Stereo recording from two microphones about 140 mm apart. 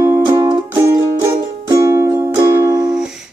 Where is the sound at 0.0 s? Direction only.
20° right (ahead or behind).